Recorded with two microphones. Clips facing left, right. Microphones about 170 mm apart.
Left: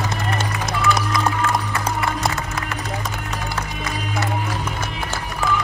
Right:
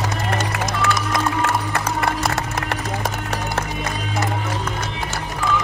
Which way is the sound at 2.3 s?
75° right (ahead or behind).